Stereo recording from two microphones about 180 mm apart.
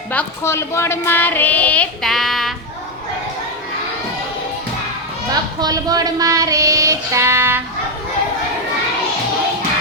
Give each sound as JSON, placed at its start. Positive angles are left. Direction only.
{"t": 0.1, "sound": "speech", "side_deg": 10}
{"t": 5.3, "sound": "child singing", "side_deg": -20}